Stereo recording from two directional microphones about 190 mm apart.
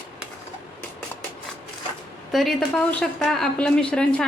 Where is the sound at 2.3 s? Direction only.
Centre (ahead or behind).